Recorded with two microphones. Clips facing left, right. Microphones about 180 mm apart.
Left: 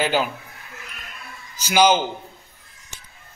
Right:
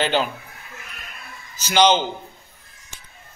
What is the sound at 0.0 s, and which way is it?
Speech, 5° left (ahead or behind).